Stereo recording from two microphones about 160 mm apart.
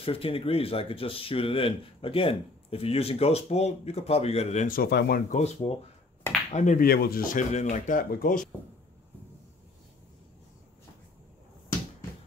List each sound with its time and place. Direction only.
0.0 s speech: 35° left (ahead or behind)
4.6 s speech: 75° left (ahead or behind)
5.3 s speech: 40° left (ahead or behind)
6.9 s speech: 70° left (ahead or behind)